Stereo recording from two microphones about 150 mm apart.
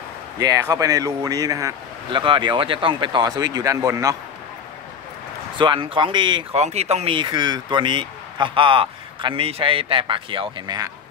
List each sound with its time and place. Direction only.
0.4 s speech: 25° right (ahead or behind)
2.2 s speech: 35° right (ahead or behind)
5.6 s speech: 35° right (ahead or behind)
6.5 s speech: 45° right (ahead or behind)